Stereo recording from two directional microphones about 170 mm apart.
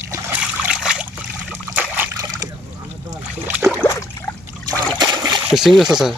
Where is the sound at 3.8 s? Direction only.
15° left (ahead or behind).